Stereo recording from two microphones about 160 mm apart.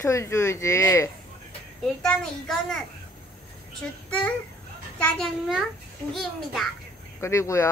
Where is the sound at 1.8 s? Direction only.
5° left (ahead or behind).